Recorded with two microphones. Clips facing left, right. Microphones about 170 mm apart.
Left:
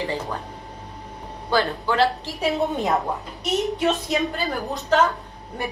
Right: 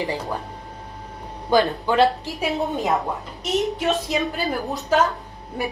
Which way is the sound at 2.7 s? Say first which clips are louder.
Even; centre (ahead or behind).